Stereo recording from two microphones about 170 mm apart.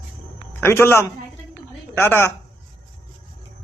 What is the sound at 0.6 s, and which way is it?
A man's voice, 15° left (ahead or behind).